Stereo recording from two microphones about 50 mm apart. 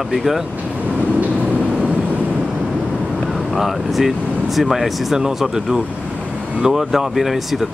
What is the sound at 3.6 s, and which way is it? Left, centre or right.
Speech, centre.